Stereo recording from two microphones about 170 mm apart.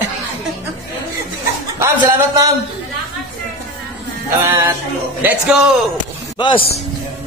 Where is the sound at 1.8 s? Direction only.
15° right (ahead or behind).